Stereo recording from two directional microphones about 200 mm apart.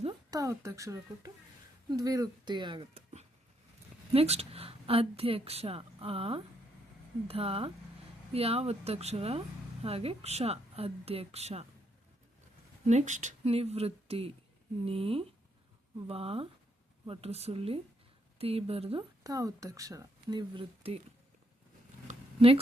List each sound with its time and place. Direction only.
0.0 s a woman's voice: 20° right (ahead or behind)
12.8 s a woman's voice: 35° right (ahead or behind)
19.2 s speech: 15° right (ahead or behind)
22.0 s zipper: 30° right (ahead or behind)